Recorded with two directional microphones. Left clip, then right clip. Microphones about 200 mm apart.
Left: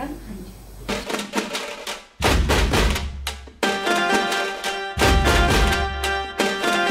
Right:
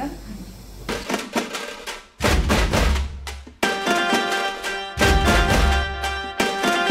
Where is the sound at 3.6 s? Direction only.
Centre (ahead or behind).